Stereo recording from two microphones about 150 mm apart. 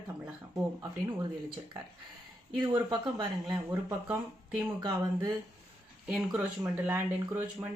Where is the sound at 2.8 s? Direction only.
30° right (ahead or behind).